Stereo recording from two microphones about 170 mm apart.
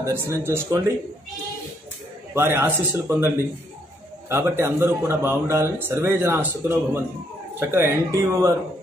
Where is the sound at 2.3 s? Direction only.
15° right (ahead or behind).